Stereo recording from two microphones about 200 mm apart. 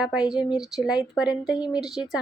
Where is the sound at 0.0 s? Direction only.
5° right (ahead or behind).